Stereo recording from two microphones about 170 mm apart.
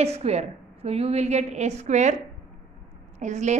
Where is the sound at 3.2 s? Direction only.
45° right (ahead or behind).